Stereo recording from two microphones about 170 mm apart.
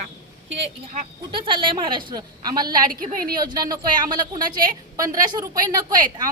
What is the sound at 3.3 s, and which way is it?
A woman's voice, 25° right (ahead or behind).